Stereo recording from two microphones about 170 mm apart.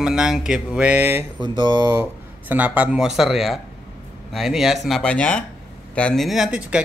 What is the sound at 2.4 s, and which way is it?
Speech, 10° right (ahead or behind).